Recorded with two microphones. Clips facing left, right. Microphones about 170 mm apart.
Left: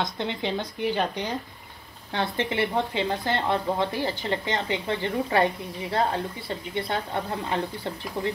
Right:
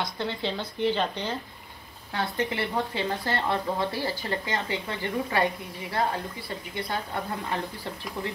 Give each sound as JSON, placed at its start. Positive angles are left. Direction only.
{"t": 0.0, "sound": "speech", "side_deg": 20}
{"t": 2.1, "sound": "speech", "side_deg": 25}
{"t": 8.2, "sound": "speech", "side_deg": 35}